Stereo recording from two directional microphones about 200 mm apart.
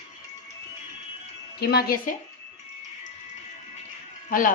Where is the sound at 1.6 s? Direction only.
50° left (ahead or behind).